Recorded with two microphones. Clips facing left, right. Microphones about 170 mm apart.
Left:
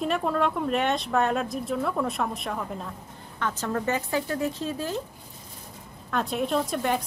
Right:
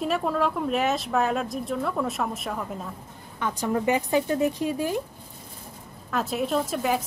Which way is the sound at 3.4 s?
15° right (ahead or behind).